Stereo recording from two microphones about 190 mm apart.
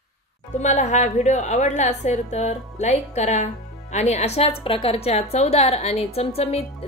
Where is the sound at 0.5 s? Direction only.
35° left (ahead or behind).